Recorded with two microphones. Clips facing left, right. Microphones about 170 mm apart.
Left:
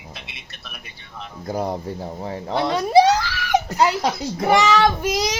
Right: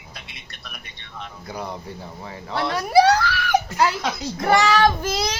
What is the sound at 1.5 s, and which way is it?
Speech, 45° left (ahead or behind).